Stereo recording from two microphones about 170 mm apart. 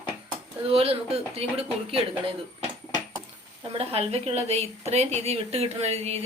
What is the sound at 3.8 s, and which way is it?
A woman's voice, 35° right (ahead or behind).